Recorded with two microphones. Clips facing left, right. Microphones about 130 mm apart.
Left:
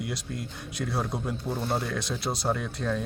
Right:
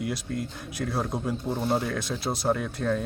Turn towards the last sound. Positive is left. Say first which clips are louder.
# right 3 dB
turn(degrees=-5)  # may be behind; listen again after turning